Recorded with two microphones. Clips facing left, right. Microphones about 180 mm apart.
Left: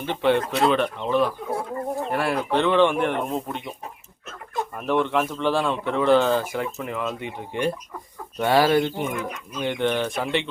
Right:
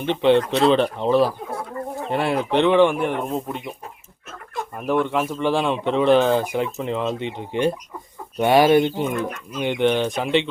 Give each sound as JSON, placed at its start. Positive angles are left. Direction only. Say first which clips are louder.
{"t": 0.1, "sound": "speech", "louder": "right 4 dB", "side_deg": -20}
{"t": 2.0, "sound": "speech", "louder": "right 5 dB", "side_deg": -20}
{"t": 4.8, "sound": "speech", "louder": "right 1 dB", "side_deg": -10}